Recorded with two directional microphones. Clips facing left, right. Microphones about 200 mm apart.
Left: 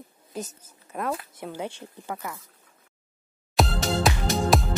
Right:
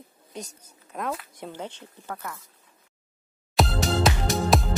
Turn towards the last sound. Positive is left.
turn(degrees=0)  # may be behind; listen again after turning